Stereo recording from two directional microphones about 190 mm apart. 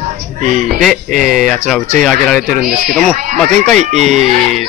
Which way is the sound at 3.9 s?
35° right (ahead or behind).